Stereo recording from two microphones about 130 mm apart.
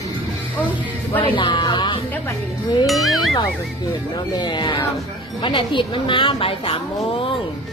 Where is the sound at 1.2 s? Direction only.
40° left (ahead or behind).